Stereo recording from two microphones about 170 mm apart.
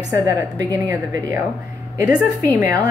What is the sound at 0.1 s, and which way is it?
A woman's voice, 20° right (ahead or behind).